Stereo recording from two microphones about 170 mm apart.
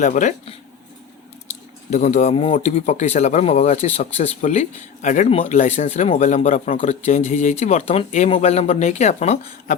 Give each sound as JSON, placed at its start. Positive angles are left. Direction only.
{"t": 0.0, "sound": "speech", "side_deg": 45}
{"t": 1.9, "sound": "speech", "side_deg": 45}